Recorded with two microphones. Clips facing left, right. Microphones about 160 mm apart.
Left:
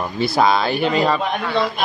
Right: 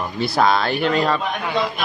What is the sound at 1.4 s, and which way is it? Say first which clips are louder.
Speech: left 2 dB; 20° right (ahead or behind).